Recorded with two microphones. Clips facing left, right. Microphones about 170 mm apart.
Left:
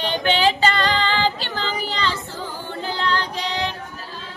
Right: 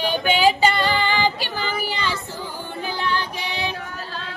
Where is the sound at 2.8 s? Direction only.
15° right (ahead or behind).